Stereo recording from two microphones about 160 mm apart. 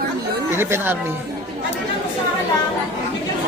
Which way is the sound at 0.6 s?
15° right (ahead or behind).